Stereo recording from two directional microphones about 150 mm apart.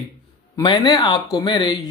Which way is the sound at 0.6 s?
30° left (ahead or behind).